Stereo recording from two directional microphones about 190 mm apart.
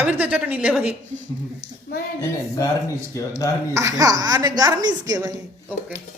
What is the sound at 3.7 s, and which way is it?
A woman's voice, 15° right (ahead or behind).